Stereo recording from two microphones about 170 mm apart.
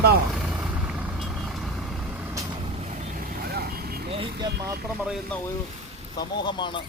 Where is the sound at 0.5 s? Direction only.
5° right (ahead or behind).